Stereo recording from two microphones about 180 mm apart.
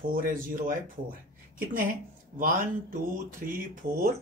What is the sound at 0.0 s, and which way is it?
Speech, 50° right (ahead or behind).